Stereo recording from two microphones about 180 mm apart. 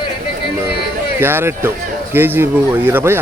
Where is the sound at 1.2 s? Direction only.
10° right (ahead or behind).